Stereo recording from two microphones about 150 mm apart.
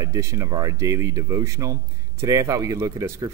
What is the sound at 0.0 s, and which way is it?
A man's voice, 20° right (ahead or behind).